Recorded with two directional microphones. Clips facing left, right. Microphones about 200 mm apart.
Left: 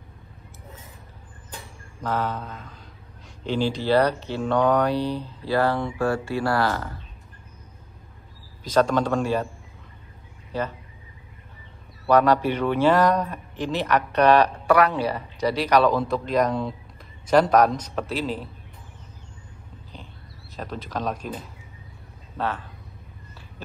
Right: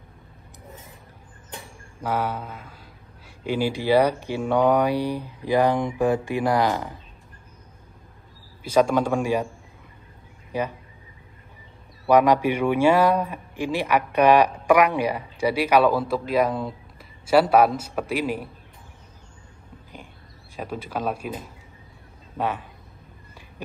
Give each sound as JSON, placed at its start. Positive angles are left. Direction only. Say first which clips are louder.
{"t": 2.0, "sound": "a man's voice", "louder": "right 1 dB", "side_deg": -10}
{"t": 8.6, "sound": "a man's voice", "louder": "right 1 dB", "side_deg": -10}
{"t": 10.5, "sound": "speech", "louder": "right 1 dB", "side_deg": -10}
{"t": 12.1, "sound": "a man's voice", "louder": "right 1 dB", "side_deg": -10}
{"t": 20.5, "sound": "a man's voice", "louder": "right 1 dB", "side_deg": -10}
{"t": 22.4, "sound": "a man's voice", "louder": "right 1 dB", "side_deg": -15}